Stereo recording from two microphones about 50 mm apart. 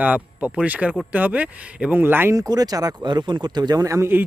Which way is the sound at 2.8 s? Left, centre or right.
Right.